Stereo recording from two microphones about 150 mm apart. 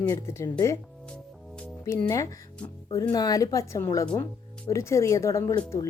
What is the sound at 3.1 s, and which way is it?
A woman's voice, 25° left (ahead or behind).